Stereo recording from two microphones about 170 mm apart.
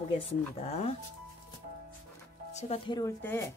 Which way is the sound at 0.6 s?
40° left (ahead or behind).